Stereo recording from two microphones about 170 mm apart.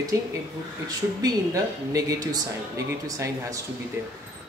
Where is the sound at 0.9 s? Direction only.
20° right (ahead or behind).